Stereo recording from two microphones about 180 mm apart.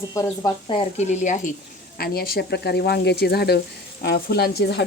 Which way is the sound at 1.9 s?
55° left (ahead or behind).